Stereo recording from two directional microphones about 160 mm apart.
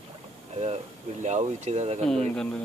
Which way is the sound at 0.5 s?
40° right (ahead or behind).